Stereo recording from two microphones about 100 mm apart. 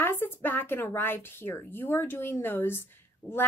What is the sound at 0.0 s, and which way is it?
A woman's voice, 20° left (ahead or behind).